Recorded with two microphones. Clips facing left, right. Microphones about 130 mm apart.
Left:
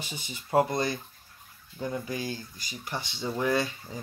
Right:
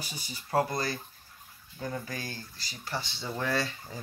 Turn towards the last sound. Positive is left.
turn(degrees=20)  # may be behind; listen again after turning